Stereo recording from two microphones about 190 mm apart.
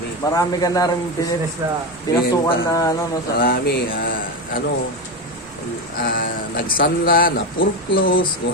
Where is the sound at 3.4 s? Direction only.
55° left (ahead or behind).